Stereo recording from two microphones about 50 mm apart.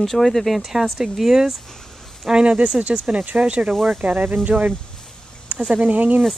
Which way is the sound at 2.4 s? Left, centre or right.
Right.